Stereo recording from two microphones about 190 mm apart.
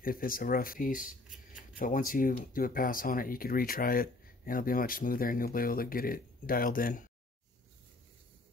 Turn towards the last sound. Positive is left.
turn(degrees=50)  # may be behind; listen again after turning